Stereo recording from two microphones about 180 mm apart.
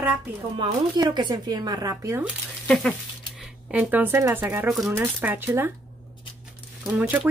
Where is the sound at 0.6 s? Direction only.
25° right (ahead or behind).